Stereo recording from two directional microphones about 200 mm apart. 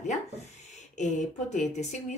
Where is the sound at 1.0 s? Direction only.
35° left (ahead or behind).